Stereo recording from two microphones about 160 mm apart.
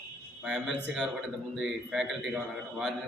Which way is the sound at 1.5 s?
Centre (ahead or behind).